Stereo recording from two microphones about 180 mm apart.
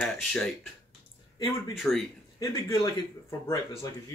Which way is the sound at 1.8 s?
Centre (ahead or behind).